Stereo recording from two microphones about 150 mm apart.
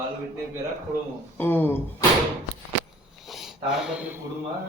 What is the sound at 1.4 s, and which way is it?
Speech, 15° left (ahead or behind).